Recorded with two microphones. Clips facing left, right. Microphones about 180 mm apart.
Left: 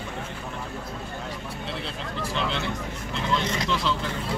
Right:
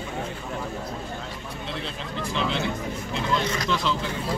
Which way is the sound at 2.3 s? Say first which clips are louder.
Right 2 dB; centre (ahead or behind).